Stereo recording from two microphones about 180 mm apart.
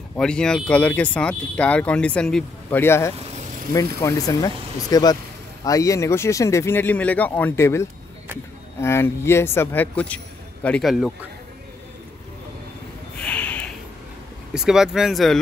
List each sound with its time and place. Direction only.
0.1 s speech: 5° left (ahead or behind)
13.2 s a sound: 5° left (ahead or behind)
14.5 s speech: 5° right (ahead or behind)